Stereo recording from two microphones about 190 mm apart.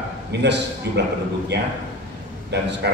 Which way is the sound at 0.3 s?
65° right (ahead or behind).